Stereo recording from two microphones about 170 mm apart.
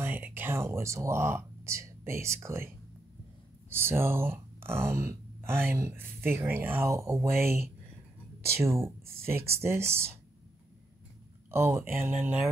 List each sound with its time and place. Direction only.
0.0 s speech: 10° right (ahead or behind)
3.7 s speech: 15° right (ahead or behind)
11.5 s speech: 15° right (ahead or behind)